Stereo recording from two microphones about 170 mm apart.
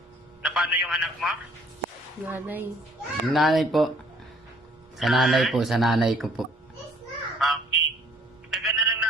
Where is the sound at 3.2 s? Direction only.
Centre (ahead or behind).